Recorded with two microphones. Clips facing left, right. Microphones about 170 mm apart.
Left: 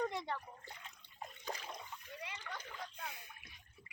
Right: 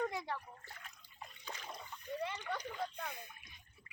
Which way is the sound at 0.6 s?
20° left (ahead or behind).